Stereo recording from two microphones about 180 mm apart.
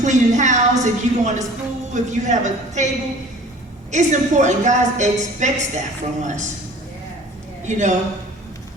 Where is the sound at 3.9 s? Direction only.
40° right (ahead or behind).